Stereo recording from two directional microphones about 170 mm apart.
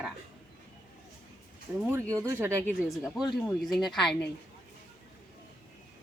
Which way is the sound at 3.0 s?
5° right (ahead or behind).